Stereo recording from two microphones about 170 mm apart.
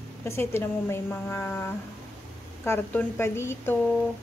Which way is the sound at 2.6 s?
10° left (ahead or behind).